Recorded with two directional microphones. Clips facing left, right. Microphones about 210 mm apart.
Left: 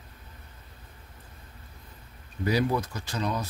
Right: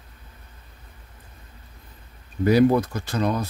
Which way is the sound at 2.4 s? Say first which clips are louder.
Right 9 dB; 55° right (ahead or behind).